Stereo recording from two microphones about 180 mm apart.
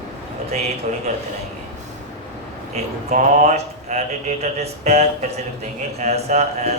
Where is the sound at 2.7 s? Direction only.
40° right (ahead or behind).